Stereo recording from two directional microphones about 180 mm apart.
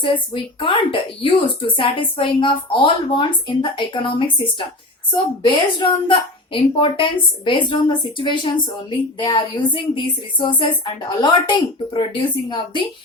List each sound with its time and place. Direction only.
0.6 s speech: 30° left (ahead or behind)
5.1 s speech: 25° left (ahead or behind)